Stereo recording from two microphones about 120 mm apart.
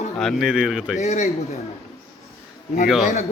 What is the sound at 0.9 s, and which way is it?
Speech, 70° left (ahead or behind).